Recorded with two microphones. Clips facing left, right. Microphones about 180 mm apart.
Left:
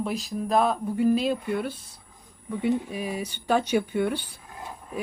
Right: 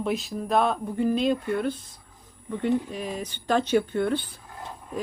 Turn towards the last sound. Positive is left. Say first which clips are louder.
# right 1 dB
turn(degrees=10)  # may be behind; listen again after turning